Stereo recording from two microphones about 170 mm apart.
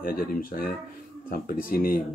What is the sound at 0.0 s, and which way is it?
Speech, 60° left (ahead or behind).